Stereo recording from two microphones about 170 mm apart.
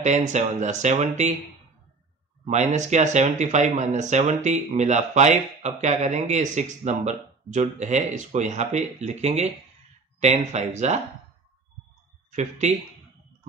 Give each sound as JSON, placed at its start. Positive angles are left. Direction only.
{"t": 0.0, "sound": "speech", "side_deg": -45}
{"t": 2.4, "sound": "speech", "side_deg": -45}
{"t": 12.3, "sound": "speech", "side_deg": -45}